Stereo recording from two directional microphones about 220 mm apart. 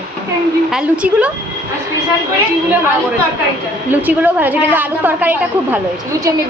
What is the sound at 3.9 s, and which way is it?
A woman's voice, 10° right (ahead or behind).